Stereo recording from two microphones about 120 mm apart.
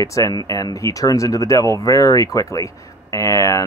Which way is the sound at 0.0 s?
25° left (ahead or behind).